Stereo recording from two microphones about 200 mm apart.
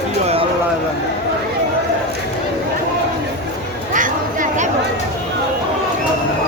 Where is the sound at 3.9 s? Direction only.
40° right (ahead or behind).